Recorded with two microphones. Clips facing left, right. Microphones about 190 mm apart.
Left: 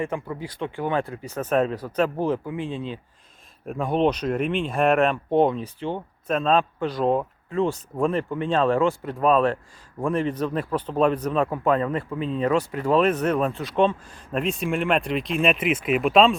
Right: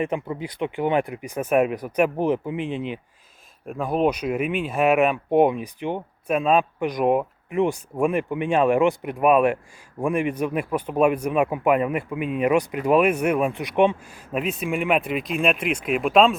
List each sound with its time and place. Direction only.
0.0 s speech: 20° right (ahead or behind)
3.7 s speech: centre (ahead or behind)